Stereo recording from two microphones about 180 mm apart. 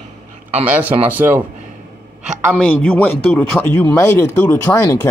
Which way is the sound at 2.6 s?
10° left (ahead or behind).